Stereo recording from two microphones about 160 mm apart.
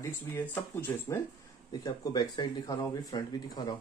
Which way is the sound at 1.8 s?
25° left (ahead or behind).